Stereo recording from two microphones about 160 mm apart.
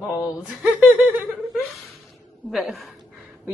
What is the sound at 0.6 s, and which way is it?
Chuckle, 10° right (ahead or behind).